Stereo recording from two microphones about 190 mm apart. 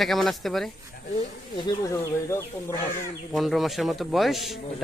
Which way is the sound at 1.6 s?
15° left (ahead or behind).